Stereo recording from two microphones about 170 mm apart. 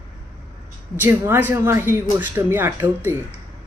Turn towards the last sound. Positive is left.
turn(degrees=-10)  # may be behind; listen again after turning